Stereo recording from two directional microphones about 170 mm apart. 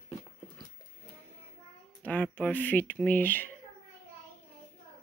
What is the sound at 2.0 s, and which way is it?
Speech, 10° left (ahead or behind).